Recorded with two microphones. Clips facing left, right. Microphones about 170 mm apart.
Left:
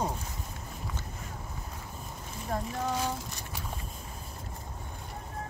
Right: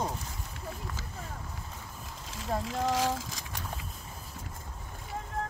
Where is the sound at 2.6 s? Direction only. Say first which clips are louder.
Right 4 dB; 90° right.